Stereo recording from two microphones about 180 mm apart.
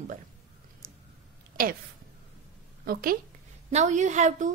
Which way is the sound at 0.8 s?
50° right (ahead or behind).